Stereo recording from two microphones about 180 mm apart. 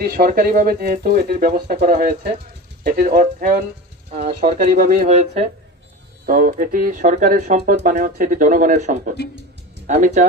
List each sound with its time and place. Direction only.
0.0 s speech: 55° right (ahead or behind)
4.1 s speech: 40° right (ahead or behind)
5.0 s speech: 35° right (ahead or behind)
6.2 s speech: 50° right (ahead or behind)
7.6 s speech: 55° right (ahead or behind); by 10.2 s 40° right (ahead or behind)